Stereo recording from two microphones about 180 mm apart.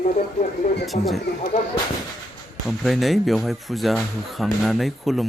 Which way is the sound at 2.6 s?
Centre (ahead or behind).